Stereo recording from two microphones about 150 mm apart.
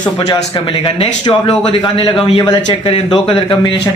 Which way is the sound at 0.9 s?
35° left (ahead or behind).